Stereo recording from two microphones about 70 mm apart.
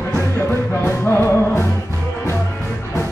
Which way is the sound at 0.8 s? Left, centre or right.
Left.